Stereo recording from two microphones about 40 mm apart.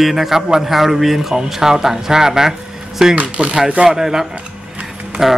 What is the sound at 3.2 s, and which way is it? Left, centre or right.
Speech, right.